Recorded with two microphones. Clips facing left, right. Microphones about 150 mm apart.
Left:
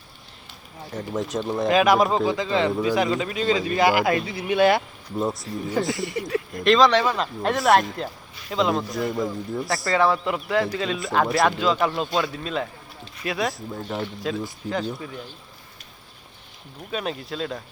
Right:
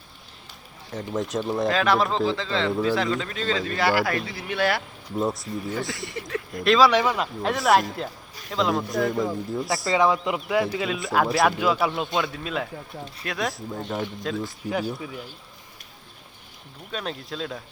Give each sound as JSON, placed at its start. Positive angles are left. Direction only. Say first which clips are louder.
{"t": 0.9, "sound": "speech", "louder": "even", "side_deg": 0}
{"t": 1.7, "sound": "a man's voice", "louder": "left 6 dB", "side_deg": 15}
{"t": 5.2, "sound": "speech", "louder": "even", "side_deg": 0}
{"t": 6.1, "sound": "a man's voice", "louder": "left 5 dB", "side_deg": 15}
{"t": 6.5, "sound": "speech", "louder": "left 1 dB", "side_deg": 0}
{"t": 7.4, "sound": "speech", "louder": "left 2 dB", "side_deg": 0}
{"t": 9.9, "sound": "speech", "louder": "even", "side_deg": -15}
{"t": 14.7, "sound": "speech", "louder": "even", "side_deg": -10}
{"t": 16.9, "sound": "speech", "louder": "left 3 dB", "side_deg": 5}